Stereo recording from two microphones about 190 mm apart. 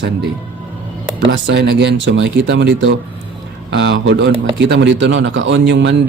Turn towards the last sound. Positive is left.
turn(degrees=-70)  # may be behind; listen again after turning